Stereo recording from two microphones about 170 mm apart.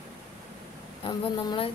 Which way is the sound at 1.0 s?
30° left (ahead or behind).